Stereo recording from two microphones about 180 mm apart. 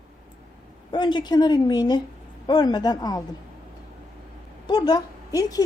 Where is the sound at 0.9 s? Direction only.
25° left (ahead or behind).